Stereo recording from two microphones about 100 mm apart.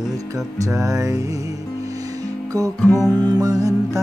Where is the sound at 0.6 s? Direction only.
35° right (ahead or behind).